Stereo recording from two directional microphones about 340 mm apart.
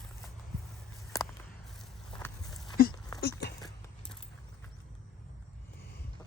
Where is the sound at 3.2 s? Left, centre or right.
Left.